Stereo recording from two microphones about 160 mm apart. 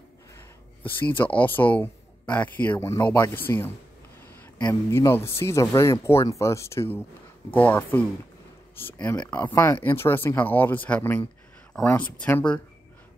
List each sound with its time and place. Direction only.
1.3 s speech: 10° left (ahead or behind)